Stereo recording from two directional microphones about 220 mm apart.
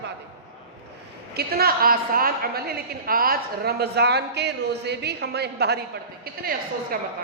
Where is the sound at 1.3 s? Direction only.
45° right (ahead or behind).